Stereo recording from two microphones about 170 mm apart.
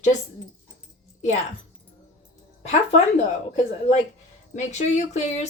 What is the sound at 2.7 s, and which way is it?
Speech, 40° left (ahead or behind).